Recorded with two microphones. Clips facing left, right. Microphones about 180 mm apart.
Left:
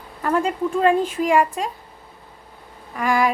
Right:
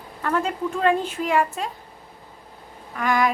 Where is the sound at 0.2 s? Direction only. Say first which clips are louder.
Left 3 dB; 10° left (ahead or behind).